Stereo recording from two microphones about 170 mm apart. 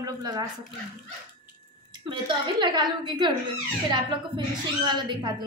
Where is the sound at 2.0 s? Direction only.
30° right (ahead or behind).